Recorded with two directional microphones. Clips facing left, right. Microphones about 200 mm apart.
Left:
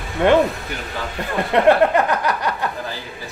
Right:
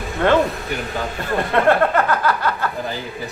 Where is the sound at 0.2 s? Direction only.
15° left (ahead or behind).